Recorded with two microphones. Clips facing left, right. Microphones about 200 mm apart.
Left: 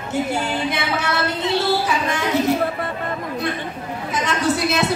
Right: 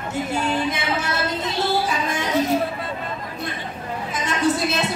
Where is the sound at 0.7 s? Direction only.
70° left (ahead or behind).